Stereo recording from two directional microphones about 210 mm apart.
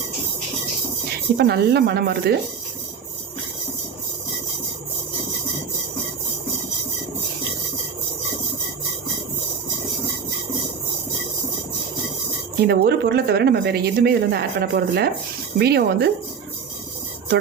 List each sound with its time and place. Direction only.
1.4 s a woman's voice: 50° right (ahead or behind)
12.6 s a woman's voice: 50° right (ahead or behind)